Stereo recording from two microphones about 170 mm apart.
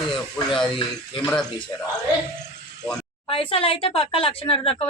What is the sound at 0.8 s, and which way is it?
Speech, 30° left (ahead or behind).